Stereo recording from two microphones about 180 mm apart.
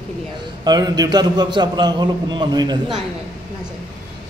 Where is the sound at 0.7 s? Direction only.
20° right (ahead or behind).